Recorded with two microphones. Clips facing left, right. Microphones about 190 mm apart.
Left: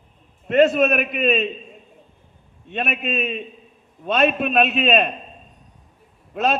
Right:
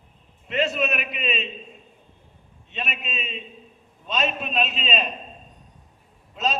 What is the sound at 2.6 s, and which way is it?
A man's voice, 55° left (ahead or behind).